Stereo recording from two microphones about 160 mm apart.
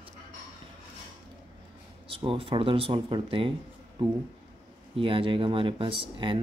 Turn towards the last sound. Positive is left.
turn(degrees=-30)  # may be behind; listen again after turning